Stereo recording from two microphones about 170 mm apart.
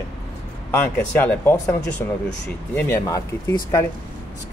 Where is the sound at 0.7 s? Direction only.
10° left (ahead or behind).